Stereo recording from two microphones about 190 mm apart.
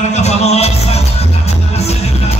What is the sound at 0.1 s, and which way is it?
Music, 35° left (ahead or behind).